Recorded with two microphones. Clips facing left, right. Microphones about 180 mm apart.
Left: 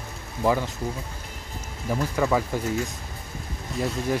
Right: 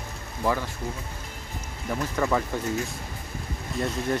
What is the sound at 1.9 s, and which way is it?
Speech, 5° left (ahead or behind).